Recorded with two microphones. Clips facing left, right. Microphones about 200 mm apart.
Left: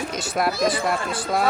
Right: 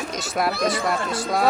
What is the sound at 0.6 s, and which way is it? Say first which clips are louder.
Speech: even; centre (ahead or behind).